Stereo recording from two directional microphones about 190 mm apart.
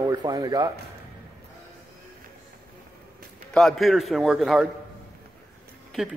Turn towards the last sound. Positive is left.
turn(degrees=-5)  # may be behind; listen again after turning